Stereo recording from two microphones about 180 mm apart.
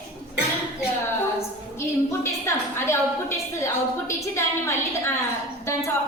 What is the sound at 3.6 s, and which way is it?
A woman's voice, 15° left (ahead or behind).